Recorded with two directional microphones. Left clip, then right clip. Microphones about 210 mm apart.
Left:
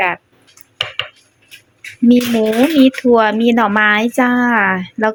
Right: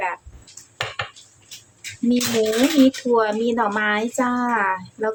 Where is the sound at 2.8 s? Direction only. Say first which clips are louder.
Left 7 dB; 30° left (ahead or behind).